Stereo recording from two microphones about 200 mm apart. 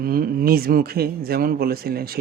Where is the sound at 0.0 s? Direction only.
45° right (ahead or behind).